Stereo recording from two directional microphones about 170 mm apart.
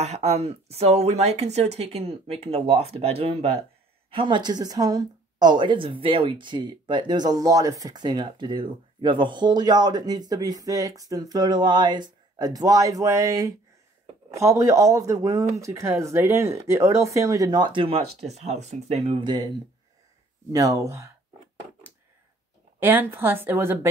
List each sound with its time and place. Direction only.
0.0 s a woman's voice: 40° right (ahead or behind)
20.5 s a woman's voice: 20° right (ahead or behind)
22.8 s speech: 10° right (ahead or behind)